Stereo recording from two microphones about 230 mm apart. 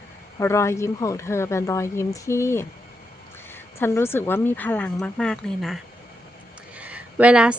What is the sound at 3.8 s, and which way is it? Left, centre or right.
Speech, centre.